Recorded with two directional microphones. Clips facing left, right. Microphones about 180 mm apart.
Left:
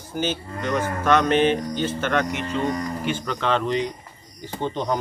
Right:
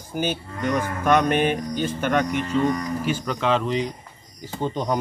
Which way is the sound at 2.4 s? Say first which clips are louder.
Right 3 dB; 30° left (ahead or behind).